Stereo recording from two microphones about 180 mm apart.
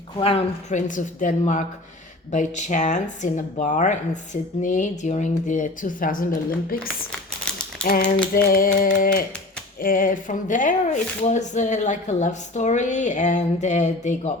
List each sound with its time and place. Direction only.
0.2 s speech: 30° left (ahead or behind); by 6.2 s 50° left (ahead or behind)
7.9 s speech: 55° left (ahead or behind)